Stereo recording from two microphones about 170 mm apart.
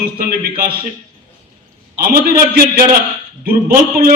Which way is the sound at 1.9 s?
60° right (ahead or behind).